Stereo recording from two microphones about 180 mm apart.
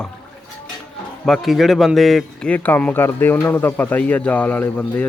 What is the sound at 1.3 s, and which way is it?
A man's voice, centre (ahead or behind).